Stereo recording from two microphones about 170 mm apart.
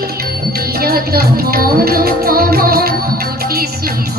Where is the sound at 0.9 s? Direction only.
60° right (ahead or behind).